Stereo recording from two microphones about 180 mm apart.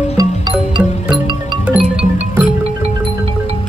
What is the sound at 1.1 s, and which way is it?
Music, 25° right (ahead or behind).